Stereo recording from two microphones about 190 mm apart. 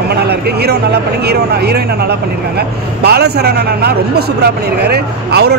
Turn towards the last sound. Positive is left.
turn(degrees=-60)  # may be behind; listen again after turning